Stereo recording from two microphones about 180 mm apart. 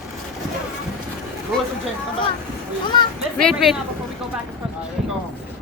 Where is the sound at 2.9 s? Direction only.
25° left (ahead or behind).